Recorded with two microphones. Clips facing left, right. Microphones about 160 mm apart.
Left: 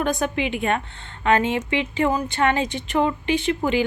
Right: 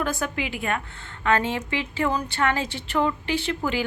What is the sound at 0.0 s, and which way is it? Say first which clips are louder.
Speech: left 4 dB; 20° left (ahead or behind).